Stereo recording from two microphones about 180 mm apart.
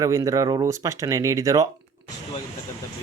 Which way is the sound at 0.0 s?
20° right (ahead or behind).